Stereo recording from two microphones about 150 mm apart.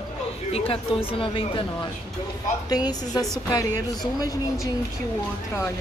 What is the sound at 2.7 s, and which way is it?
A woman's voice, 25° left (ahead or behind).